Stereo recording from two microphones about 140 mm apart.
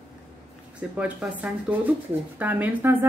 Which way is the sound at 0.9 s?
10° right (ahead or behind).